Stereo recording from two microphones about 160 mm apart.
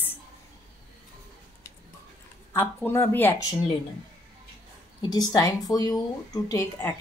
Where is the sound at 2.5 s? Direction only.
15° left (ahead or behind).